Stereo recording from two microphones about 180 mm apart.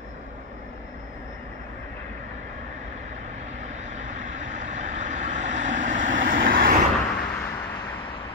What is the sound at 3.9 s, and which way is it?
Vehicle, 45° right (ahead or behind).